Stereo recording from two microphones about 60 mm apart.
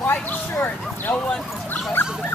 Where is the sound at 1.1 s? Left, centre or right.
Left.